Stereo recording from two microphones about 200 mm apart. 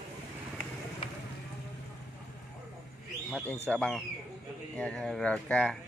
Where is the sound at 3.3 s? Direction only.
5° left (ahead or behind).